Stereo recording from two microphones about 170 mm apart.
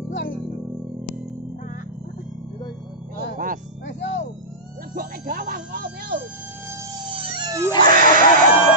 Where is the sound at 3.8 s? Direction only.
90° left.